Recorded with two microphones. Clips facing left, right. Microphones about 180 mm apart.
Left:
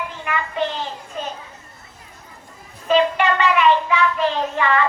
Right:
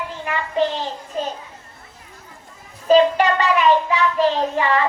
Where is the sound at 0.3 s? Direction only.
35° right (ahead or behind).